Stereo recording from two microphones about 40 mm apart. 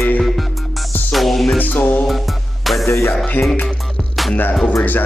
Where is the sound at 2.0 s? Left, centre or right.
Centre.